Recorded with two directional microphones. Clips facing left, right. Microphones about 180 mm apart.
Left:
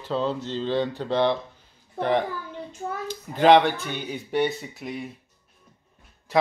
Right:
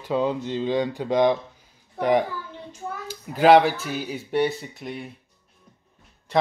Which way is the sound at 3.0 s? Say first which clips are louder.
Right 1 dB; 10° right (ahead or behind).